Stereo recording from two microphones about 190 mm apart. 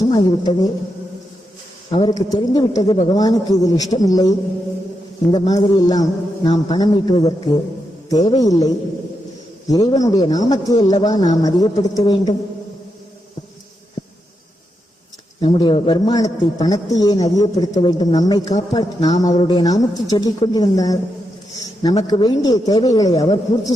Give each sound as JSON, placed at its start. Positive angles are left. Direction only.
{"t": 0.0, "sound": "a man's voice", "side_deg": 20}
{"t": 1.9, "sound": "a man's voice", "side_deg": 20}
{"t": 15.4, "sound": "a man's voice", "side_deg": 25}
{"t": 22.0, "sound": "a man's voice", "side_deg": 20}